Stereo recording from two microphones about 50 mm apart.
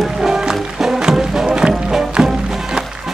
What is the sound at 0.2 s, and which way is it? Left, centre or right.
Music, centre.